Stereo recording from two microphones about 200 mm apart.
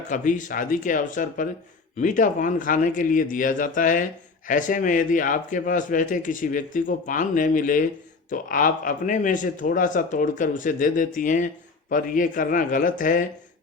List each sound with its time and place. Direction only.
0.1 s a man's voice: 40° left (ahead or behind)